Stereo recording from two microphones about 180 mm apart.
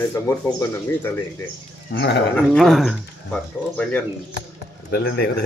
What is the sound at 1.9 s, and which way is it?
Speech, 70° left (ahead or behind).